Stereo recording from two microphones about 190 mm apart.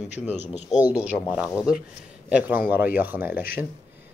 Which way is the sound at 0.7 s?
35° left (ahead or behind).